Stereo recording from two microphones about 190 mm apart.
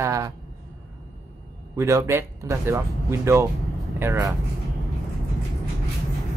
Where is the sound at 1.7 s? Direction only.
15° right (ahead or behind).